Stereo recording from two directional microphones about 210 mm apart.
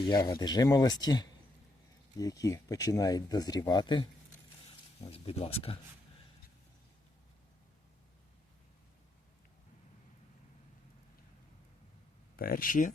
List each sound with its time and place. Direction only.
0.1 s speech: 15° left (ahead or behind)
12.4 s speech: 45° left (ahead or behind)